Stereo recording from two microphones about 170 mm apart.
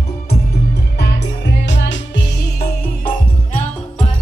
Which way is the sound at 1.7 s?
90° left.